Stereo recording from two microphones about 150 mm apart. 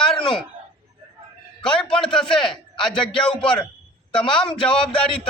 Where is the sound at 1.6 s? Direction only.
5° left (ahead or behind).